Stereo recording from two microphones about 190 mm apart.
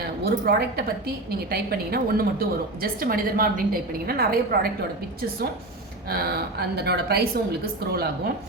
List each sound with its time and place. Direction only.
0.3 s a woman's voice: 55° right (ahead or behind)
6.1 s a woman's voice: 55° right (ahead or behind)